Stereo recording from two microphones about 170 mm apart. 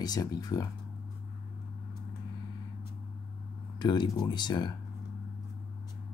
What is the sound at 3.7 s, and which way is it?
Speech, 25° left (ahead or behind).